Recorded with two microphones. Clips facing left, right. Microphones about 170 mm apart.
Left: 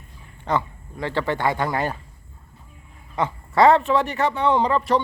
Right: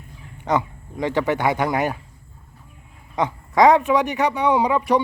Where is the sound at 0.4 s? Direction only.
15° right (ahead or behind).